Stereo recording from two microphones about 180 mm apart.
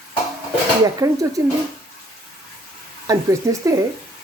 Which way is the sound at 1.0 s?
15° right (ahead or behind).